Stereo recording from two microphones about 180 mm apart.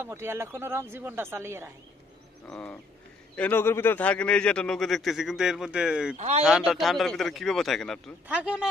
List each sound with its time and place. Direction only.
0.0 s speech: 15° right (ahead or behind)
2.4 s a man's voice: 5° left (ahead or behind)
6.1 s speech: 40° right (ahead or behind)
6.4 s a man's voice: 5° right (ahead or behind)